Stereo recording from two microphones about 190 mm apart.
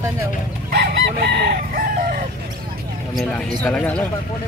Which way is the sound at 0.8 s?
65° right (ahead or behind).